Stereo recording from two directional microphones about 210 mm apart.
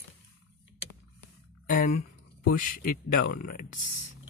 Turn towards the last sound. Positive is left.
turn(degrees=45)  # may be behind; listen again after turning